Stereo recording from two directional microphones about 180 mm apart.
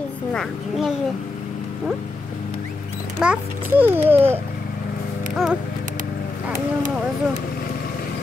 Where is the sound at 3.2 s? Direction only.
5° right (ahead or behind).